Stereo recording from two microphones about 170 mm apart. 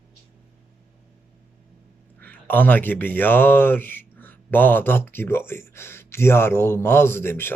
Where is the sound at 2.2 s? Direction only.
10° left (ahead or behind).